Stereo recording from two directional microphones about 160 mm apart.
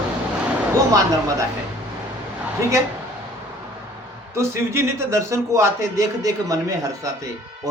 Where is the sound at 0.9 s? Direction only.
20° right (ahead or behind).